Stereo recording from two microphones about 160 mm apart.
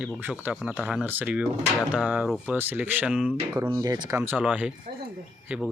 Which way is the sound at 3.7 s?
25° right (ahead or behind).